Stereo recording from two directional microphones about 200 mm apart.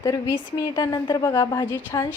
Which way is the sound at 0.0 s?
15° left (ahead or behind).